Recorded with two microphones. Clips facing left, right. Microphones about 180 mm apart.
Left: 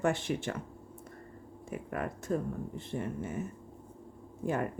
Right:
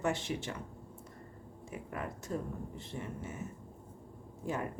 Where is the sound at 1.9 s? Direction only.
55° left (ahead or behind).